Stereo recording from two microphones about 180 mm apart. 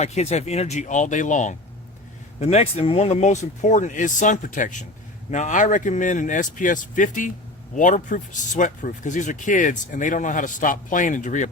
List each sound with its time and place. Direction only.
0.0 s speech: 40° left (ahead or behind)